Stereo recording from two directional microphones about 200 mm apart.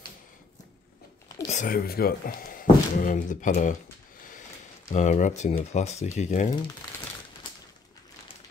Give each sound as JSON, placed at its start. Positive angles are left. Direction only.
{"t": 1.5, "sound": "speech", "side_deg": 40}
{"t": 4.8, "sound": "speech", "side_deg": 35}